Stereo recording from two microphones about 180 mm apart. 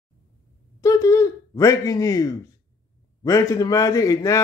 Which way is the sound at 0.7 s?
15° left (ahead or behind).